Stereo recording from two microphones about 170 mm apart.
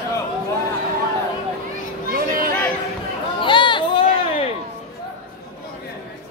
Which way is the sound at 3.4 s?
30° left (ahead or behind).